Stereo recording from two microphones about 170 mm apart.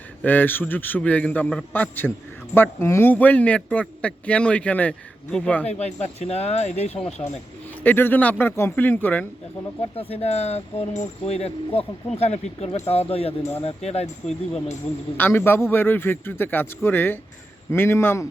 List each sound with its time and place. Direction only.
0.2 s a man's voice: 10° left (ahead or behind)
5.6 s speech: 40° left (ahead or behind)
7.9 s a man's voice: 10° left (ahead or behind)
9.9 s speech: 35° left (ahead or behind)
15.2 s a man's voice: 15° left (ahead or behind)